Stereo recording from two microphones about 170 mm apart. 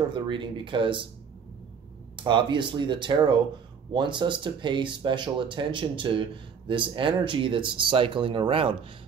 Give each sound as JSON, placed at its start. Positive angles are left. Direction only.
{"t": 0.1, "sound": "speech", "side_deg": -30}
{"t": 2.1, "sound": "speech", "side_deg": -25}